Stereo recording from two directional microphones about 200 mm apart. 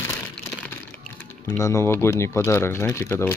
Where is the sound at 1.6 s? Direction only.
15° left (ahead or behind).